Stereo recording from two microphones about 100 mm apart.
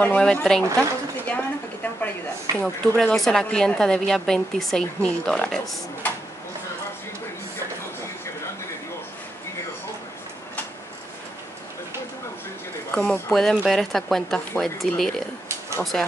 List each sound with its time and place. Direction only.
0.0 s speech: 10° left (ahead or behind)
0.7 s a sound: 15° left (ahead or behind)
2.5 s speech: centre (ahead or behind)
12.9 s speech: 15° left (ahead or behind)